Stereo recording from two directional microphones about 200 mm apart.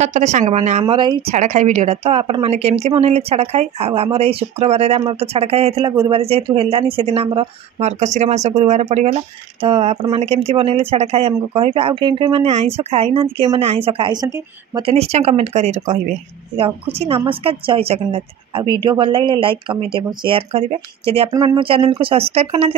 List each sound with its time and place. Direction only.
0.0 s a woman's voice: 35° right (ahead or behind)
1.3 s a woman's voice: 35° right (ahead or behind)
21.3 s speech: 15° right (ahead or behind)